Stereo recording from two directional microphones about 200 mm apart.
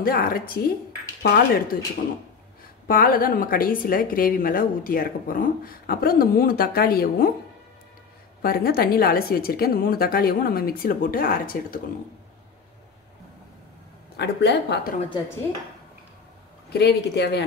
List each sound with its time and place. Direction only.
0.0 s a woman's voice: 45° left (ahead or behind)
2.9 s a woman's voice: 45° left (ahead or behind)
8.4 s a woman's voice: 50° left (ahead or behind)
14.1 s a woman's voice: 55° left (ahead or behind)
16.7 s a woman's voice: 55° left (ahead or behind)